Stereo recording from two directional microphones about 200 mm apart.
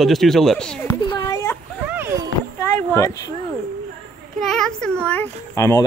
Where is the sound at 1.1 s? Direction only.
15° left (ahead or behind).